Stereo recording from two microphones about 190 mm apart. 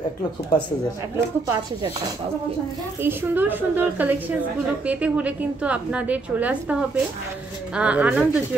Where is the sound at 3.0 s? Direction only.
10° right (ahead or behind).